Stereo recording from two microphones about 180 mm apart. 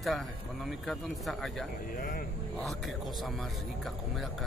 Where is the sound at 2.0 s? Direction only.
55° left (ahead or behind).